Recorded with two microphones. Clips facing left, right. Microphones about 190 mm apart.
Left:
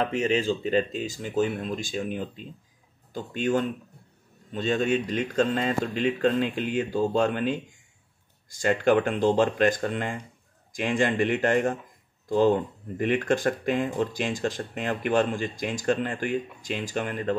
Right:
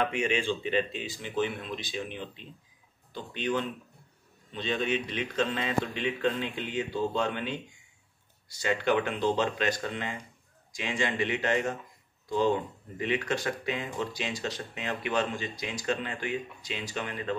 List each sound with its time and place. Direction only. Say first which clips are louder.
0.0 s speech: left 4 dB; 35° left (ahead or behind)